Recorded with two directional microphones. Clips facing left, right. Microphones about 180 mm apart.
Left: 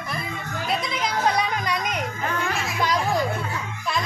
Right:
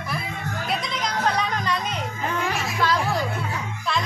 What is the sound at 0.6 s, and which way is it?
Music, centre (ahead or behind).